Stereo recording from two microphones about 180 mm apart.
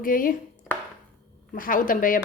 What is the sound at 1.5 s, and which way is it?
Speech, 50° left (ahead or behind).